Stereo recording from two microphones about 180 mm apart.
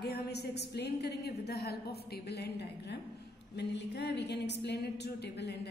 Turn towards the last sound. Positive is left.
turn(degrees=70)  # may be behind; listen again after turning